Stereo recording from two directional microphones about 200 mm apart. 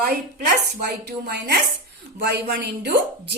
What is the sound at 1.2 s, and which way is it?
A woman's voice, 55° right (ahead or behind).